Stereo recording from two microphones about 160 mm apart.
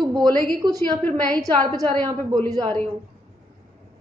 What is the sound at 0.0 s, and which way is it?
A woman's voice, 25° right (ahead or behind).